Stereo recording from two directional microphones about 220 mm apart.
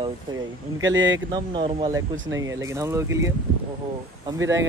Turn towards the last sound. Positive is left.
turn(degrees=-15)  # may be behind; listen again after turning